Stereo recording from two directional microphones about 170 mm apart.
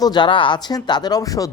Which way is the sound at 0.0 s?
25° left (ahead or behind).